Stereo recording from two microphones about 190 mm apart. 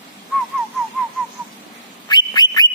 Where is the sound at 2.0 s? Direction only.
20° left (ahead or behind).